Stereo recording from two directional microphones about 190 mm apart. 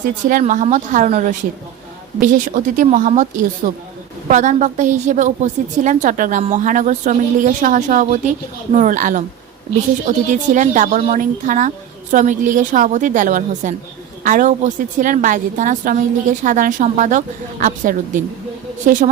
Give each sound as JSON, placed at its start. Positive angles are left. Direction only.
{"t": 0.0, "sound": "a woman's voice", "side_deg": -45}